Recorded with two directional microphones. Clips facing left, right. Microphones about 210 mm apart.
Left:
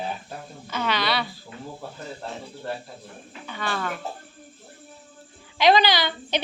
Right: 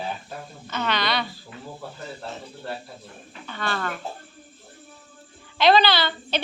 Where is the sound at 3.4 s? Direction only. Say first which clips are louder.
Even; 10° left (ahead or behind).